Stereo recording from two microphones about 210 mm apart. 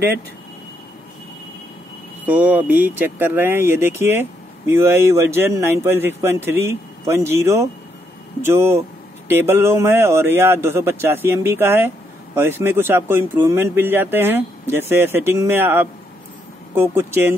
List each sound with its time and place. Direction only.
2.2 s speech: 10° right (ahead or behind)